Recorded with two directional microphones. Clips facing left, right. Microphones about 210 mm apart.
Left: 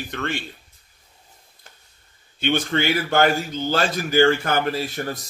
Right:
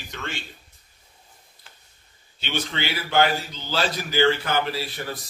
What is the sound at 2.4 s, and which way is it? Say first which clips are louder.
A man's voice: left 8 dB; 50° left (ahead or behind).